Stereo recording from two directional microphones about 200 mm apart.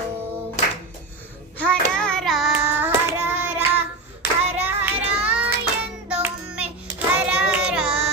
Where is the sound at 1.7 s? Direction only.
5° left (ahead or behind).